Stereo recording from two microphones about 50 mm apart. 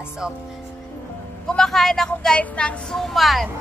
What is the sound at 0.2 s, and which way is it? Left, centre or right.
Speech, centre.